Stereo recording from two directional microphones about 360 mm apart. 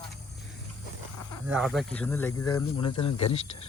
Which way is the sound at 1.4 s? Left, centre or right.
Centre.